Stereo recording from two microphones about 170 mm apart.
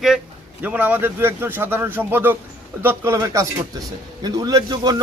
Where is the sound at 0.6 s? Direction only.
10° right (ahead or behind).